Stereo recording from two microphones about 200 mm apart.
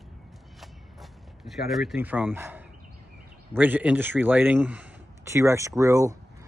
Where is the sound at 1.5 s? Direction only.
Centre (ahead or behind).